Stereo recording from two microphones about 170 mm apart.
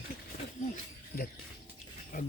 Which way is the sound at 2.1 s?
55° left (ahead or behind).